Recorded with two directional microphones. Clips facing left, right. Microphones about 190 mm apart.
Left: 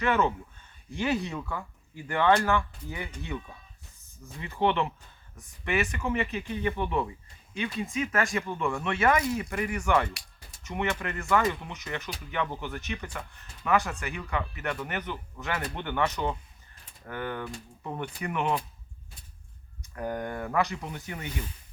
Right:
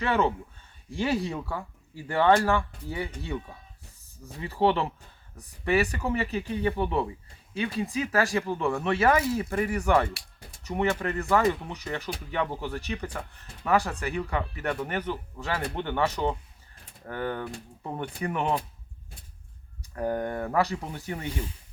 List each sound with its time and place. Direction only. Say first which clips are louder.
0.0 s speech: right 1 dB; 30° right (ahead or behind)
4.3 s speech: right 3 dB; 35° right (ahead or behind)
20.0 s speech: right 4 dB; 30° right (ahead or behind)